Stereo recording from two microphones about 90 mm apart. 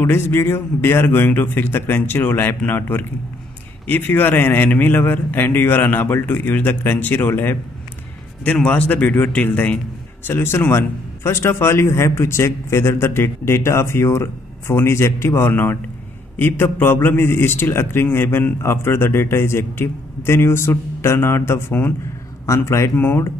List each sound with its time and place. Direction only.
0.0 s a man's voice: 25° left (ahead or behind)
8.5 s a man's voice: 15° left (ahead or behind)